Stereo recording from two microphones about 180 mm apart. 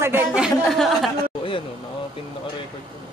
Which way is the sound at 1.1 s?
30° left (ahead or behind).